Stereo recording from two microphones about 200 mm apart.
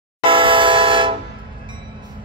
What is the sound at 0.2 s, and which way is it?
Train, 25° right (ahead or behind).